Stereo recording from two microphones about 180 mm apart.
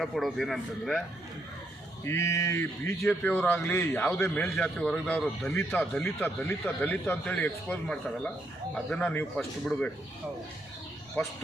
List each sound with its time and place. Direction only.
0.0 s a man's voice: centre (ahead or behind)
2.0 s a man's voice: 15° left (ahead or behind)
3.0 s a man's voice: 5° left (ahead or behind)
11.2 s a man's voice: 10° left (ahead or behind)